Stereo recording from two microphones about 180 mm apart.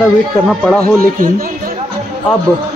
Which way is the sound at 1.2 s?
50° right (ahead or behind).